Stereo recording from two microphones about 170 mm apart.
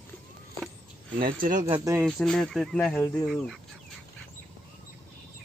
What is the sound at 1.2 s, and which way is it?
Speech, 55° right (ahead or behind).